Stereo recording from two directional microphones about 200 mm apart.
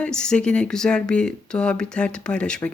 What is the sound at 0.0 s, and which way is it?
Speech, 5° left (ahead or behind).